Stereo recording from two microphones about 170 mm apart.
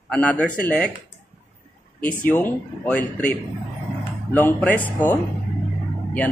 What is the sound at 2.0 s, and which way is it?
Speech, 10° left (ahead or behind).